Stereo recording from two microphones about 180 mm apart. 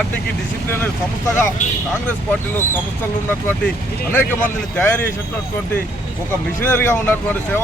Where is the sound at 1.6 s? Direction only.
45° left (ahead or behind).